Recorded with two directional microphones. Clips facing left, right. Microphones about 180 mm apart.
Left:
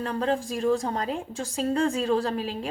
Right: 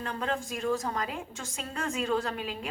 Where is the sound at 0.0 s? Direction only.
35° left (ahead or behind).